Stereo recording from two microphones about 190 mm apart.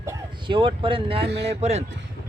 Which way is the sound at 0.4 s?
25° right (ahead or behind).